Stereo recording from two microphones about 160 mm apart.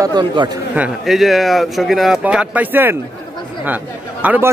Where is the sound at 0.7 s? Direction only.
Centre (ahead or behind).